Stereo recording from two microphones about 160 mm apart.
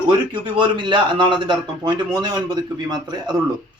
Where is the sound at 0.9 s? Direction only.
30° right (ahead or behind).